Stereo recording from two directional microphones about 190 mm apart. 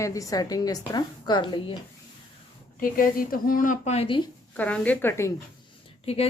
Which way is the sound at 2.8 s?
45° left (ahead or behind).